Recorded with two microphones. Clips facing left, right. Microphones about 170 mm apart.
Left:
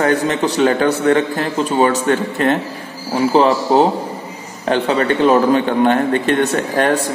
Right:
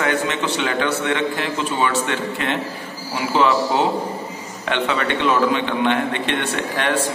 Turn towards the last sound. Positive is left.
turn(degrees=40)  # may be behind; listen again after turning